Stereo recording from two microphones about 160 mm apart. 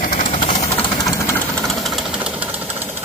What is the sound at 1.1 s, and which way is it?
Engine, 15° left (ahead or behind).